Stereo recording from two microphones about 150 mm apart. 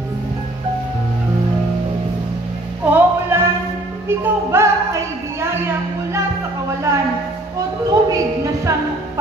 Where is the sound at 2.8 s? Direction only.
10° right (ahead or behind).